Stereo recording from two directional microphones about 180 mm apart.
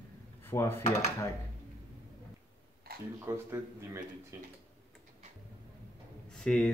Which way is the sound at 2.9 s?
55° right (ahead or behind).